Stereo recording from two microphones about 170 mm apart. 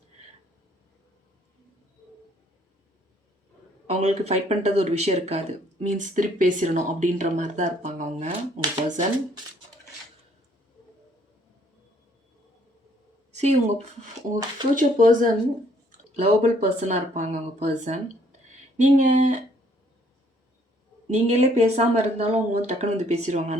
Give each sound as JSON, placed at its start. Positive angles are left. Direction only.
{"t": 3.8, "sound": "speech", "side_deg": -40}
{"t": 13.3, "sound": "speech", "side_deg": -40}
{"t": 14.2, "sound": "speech", "side_deg": -25}
{"t": 14.8, "sound": "speech", "side_deg": -50}
{"t": 21.1, "sound": "speech", "side_deg": -40}